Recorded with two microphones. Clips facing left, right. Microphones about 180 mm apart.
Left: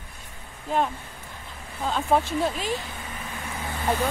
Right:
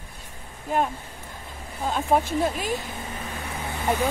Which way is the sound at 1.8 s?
10° right (ahead or behind).